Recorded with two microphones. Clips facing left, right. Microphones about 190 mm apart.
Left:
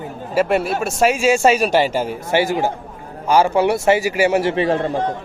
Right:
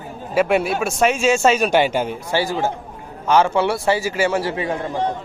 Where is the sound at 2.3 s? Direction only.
20° left (ahead or behind).